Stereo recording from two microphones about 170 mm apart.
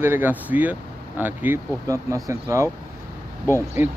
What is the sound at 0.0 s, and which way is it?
Speech, 10° right (ahead or behind).